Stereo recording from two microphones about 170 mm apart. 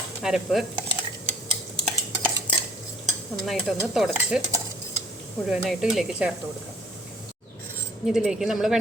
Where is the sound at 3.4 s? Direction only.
Centre (ahead or behind).